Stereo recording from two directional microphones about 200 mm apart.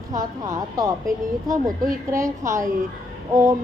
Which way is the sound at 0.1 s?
15° right (ahead or behind).